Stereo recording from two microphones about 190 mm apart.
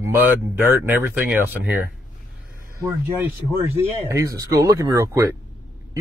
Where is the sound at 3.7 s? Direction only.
15° right (ahead or behind).